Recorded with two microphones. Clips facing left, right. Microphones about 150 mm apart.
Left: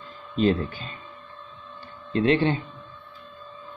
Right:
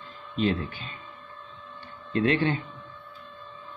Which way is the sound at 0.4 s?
40° left (ahead or behind).